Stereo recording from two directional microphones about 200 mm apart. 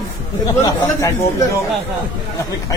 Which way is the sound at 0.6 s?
15° left (ahead or behind).